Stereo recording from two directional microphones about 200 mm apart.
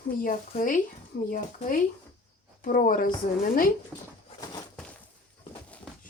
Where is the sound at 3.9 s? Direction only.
5° right (ahead or behind).